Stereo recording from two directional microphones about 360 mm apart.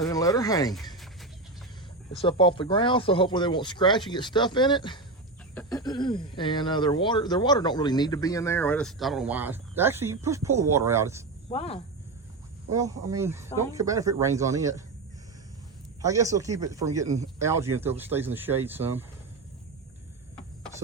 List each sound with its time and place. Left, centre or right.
0.0 s a sound: centre
2.1 s speech: centre
11.5 s speech: centre
12.7 s speech: centre
16.0 s speech: centre